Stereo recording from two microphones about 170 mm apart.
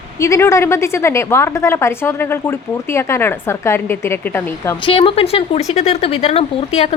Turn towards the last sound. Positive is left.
turn(degrees=35)  # may be behind; listen again after turning